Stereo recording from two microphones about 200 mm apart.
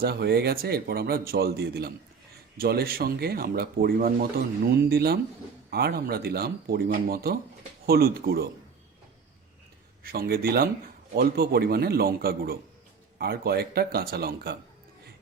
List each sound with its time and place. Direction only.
0.0 s speech: 55° right (ahead or behind)
10.0 s speech: 50° right (ahead or behind)